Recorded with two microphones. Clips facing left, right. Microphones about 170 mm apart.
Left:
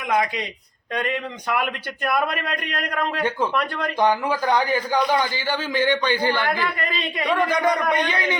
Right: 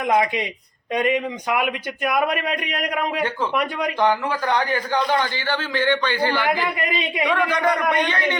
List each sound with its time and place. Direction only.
0.1 s speech: 20° right (ahead or behind)
0.9 s a man's voice: 10° right (ahead or behind)
4.0 s a man's voice: 10° left (ahead or behind)
6.3 s a man's voice: 15° right (ahead or behind)